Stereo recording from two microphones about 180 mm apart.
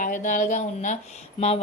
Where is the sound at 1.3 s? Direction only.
35° left (ahead or behind).